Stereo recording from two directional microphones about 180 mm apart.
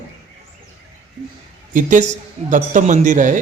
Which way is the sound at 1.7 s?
45° right (ahead or behind).